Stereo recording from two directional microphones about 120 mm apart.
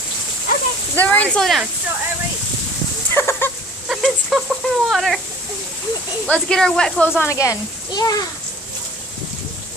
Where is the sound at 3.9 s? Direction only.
5° right (ahead or behind).